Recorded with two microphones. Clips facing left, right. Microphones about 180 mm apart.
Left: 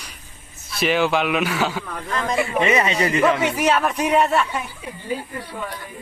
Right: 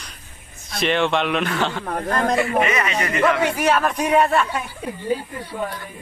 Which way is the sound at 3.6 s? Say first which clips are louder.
Even; 5° left (ahead or behind).